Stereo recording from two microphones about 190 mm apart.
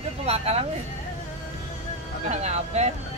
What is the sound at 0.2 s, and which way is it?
Speech, 35° right (ahead or behind).